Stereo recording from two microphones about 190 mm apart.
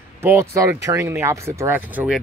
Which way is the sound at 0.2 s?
10° right (ahead or behind).